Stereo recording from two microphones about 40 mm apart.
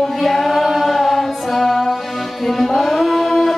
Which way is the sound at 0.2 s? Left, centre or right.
Centre.